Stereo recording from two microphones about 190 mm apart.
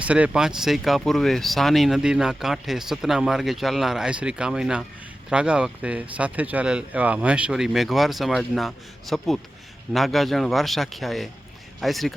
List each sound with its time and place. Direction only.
0.0 s speech: 5° right (ahead or behind)